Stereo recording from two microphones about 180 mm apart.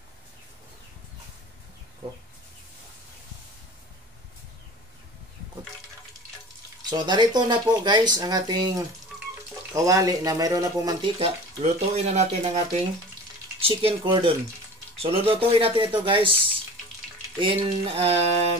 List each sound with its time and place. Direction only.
6.8 s speech: 25° right (ahead or behind)
11.1 s speech: 35° right (ahead or behind)
17.4 s speech: 30° right (ahead or behind)